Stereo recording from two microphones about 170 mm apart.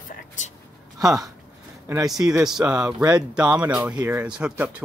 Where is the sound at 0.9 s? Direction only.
20° right (ahead or behind).